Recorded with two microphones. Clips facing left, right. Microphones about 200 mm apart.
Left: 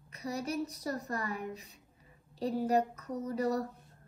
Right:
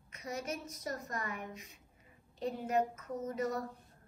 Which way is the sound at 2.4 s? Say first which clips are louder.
Left 4 dB; 35° left (ahead or behind).